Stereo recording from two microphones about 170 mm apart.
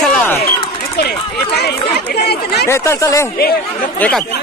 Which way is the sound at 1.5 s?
70° left (ahead or behind).